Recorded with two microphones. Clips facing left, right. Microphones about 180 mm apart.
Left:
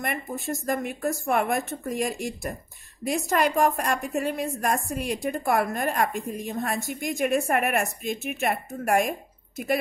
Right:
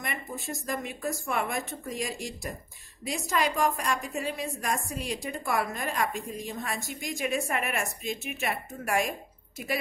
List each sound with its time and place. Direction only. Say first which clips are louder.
0.0 s a woman's voice: left 6 dB; 55° left (ahead or behind)